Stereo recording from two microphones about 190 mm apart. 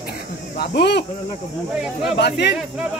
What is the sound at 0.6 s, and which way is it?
Speech, 60° left (ahead or behind).